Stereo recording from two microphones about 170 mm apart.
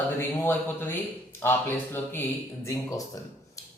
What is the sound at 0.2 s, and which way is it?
A woman's voice, 10° left (ahead or behind).